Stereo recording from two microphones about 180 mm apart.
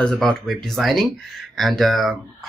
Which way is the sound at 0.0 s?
5° left (ahead or behind).